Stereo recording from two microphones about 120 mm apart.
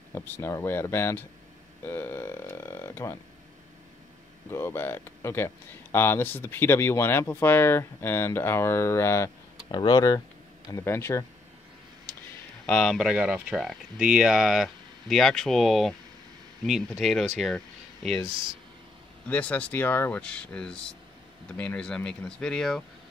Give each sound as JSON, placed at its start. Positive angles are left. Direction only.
{"t": 0.1, "sound": "speech", "side_deg": 25}
{"t": 4.5, "sound": "speech", "side_deg": 20}
{"t": 9.7, "sound": "speech", "side_deg": 35}
{"t": 12.6, "sound": "speech", "side_deg": 5}
{"t": 13.1, "sound": "speech", "side_deg": -5}
{"t": 19.2, "sound": "speech", "side_deg": 10}